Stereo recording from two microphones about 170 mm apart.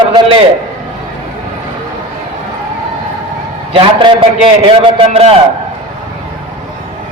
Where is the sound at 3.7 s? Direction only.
30° right (ahead or behind).